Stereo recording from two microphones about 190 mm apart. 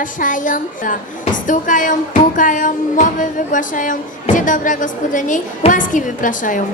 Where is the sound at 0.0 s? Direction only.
45° left (ahead or behind).